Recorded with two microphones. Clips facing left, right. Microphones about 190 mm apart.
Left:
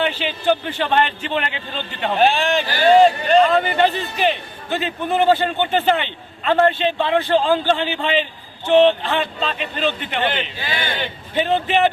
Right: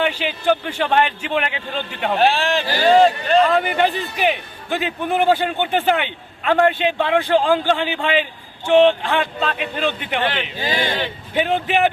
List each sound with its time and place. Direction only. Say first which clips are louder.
0.0 s speech: even; 5° right (ahead or behind)
10.6 s speech: right 4 dB; 40° right (ahead or behind)
10.9 s a man's voice: right 1 dB; centre (ahead or behind)